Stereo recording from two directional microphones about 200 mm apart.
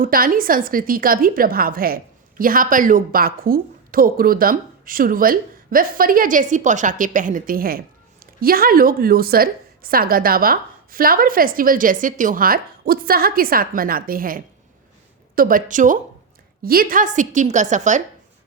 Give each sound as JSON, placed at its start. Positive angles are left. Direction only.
{"t": 0.0, "sound": "a woman's voice", "side_deg": -45}